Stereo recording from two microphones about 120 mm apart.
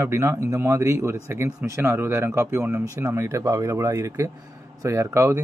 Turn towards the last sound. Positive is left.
turn(degrees=-25)  # may be behind; listen again after turning